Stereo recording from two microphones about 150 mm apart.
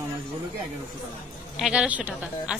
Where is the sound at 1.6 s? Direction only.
5° right (ahead or behind).